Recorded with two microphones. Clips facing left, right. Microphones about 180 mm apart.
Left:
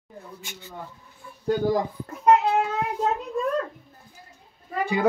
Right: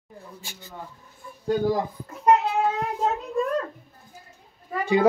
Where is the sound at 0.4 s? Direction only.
35° right (ahead or behind).